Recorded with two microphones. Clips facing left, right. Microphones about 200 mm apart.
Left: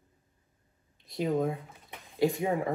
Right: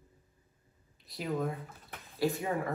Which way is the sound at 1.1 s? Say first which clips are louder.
Left 5 dB; 25° left (ahead or behind).